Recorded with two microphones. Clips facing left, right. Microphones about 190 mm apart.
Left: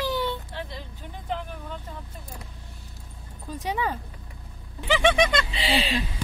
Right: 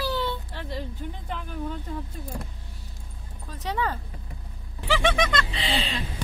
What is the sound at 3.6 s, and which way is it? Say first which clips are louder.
Speech: even; 10° left (ahead or behind).